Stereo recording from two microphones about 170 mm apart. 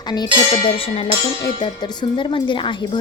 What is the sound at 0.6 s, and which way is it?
Music, 35° left (ahead or behind).